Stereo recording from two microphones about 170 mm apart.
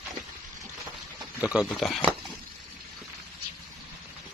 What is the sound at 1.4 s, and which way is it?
Speech, 5° right (ahead or behind).